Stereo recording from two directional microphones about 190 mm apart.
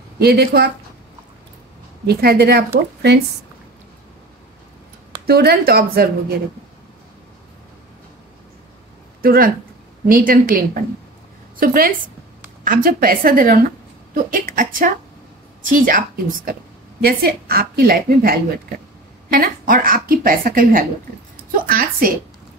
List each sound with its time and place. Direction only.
0.2 s a woman's voice: 55° right (ahead or behind)
2.0 s a woman's voice: 55° right (ahead or behind)
5.2 s a woman's voice: 55° right (ahead or behind)
9.2 s a woman's voice: 50° right (ahead or behind)